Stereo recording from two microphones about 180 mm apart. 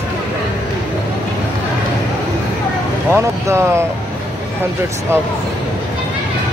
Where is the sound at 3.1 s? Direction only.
15° right (ahead or behind).